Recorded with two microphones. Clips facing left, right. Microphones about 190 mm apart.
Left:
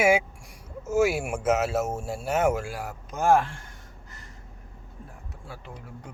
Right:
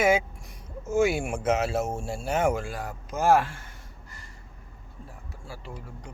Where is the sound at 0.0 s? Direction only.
10° left (ahead or behind); by 3.7 s 5° right (ahead or behind).